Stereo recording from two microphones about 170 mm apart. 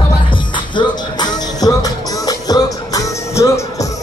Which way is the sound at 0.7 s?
25° left (ahead or behind).